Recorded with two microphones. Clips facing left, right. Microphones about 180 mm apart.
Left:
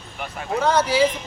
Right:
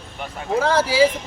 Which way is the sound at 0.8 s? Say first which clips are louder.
Right 2 dB; 10° right (ahead or behind).